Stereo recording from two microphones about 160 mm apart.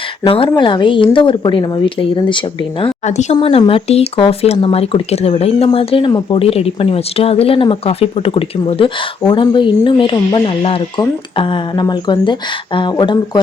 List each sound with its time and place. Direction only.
0.3 s speech: 35° left (ahead or behind)
2.8 s a woman's voice: 45° left (ahead or behind)
3.3 s speech: 30° left (ahead or behind)